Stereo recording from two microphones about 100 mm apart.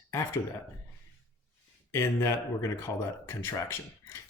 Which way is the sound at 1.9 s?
30° left (ahead or behind).